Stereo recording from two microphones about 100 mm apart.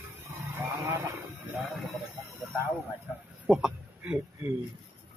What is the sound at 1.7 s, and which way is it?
Speech, centre (ahead or behind).